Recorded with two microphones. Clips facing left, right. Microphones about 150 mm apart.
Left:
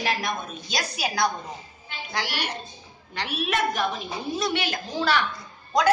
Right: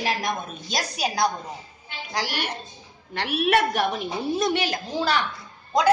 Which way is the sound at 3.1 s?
60° right (ahead or behind).